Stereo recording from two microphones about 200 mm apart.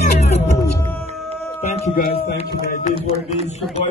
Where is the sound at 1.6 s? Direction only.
35° left (ahead or behind).